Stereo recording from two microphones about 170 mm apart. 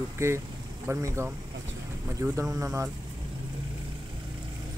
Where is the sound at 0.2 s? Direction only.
15° right (ahead or behind).